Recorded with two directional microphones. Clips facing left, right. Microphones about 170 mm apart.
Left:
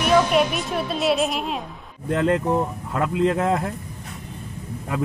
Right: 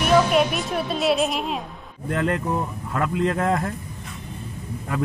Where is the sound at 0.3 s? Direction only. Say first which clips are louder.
Even; centre (ahead or behind).